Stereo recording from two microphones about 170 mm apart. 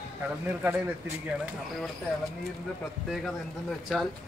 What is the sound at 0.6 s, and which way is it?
Speech, 15° right (ahead or behind).